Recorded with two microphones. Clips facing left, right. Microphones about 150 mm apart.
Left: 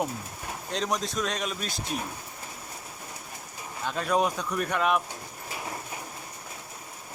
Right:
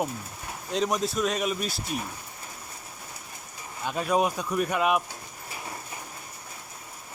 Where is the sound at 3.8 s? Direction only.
10° right (ahead or behind).